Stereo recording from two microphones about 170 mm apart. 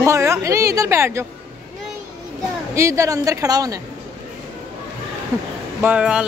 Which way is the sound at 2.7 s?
15° right (ahead or behind).